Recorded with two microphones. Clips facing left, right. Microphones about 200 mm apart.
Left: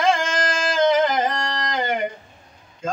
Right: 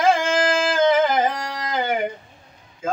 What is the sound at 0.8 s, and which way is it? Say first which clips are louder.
Music: left 1 dB; 5° right (ahead or behind).